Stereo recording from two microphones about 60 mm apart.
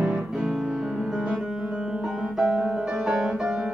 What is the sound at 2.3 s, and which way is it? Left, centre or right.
Music, centre.